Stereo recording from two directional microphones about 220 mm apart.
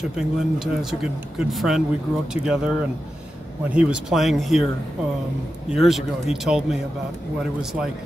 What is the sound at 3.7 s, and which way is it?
Speech, 5° right (ahead or behind).